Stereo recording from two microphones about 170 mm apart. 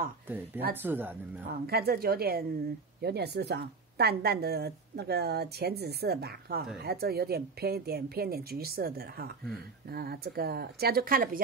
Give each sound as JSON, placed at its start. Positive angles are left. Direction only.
{"t": 0.8, "sound": "speech", "side_deg": -10}
{"t": 1.5, "sound": "a woman's voice", "side_deg": -65}